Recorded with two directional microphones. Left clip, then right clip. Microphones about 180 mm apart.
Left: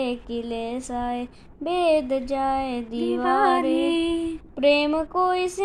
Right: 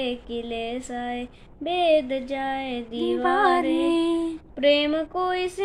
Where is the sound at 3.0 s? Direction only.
20° right (ahead or behind).